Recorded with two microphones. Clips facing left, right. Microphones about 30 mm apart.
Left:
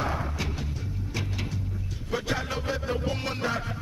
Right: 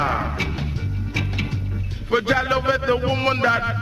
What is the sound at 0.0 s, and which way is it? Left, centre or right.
Music, right.